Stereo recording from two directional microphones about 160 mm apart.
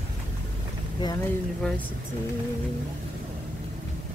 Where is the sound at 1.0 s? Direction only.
25° left (ahead or behind).